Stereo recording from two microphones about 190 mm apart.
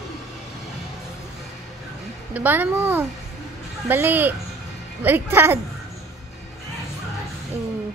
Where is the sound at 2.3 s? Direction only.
10° right (ahead or behind).